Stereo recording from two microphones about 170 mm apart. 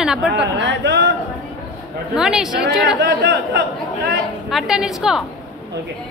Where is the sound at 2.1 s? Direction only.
5° right (ahead or behind).